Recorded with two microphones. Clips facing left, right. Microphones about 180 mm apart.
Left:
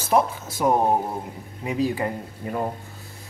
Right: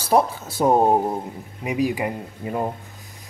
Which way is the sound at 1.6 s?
15° right (ahead or behind).